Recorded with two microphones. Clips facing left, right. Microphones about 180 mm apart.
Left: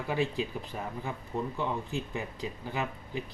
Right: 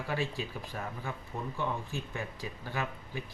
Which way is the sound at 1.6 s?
15° left (ahead or behind).